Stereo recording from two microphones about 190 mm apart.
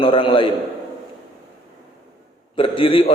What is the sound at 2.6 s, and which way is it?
Speech, 30° left (ahead or behind).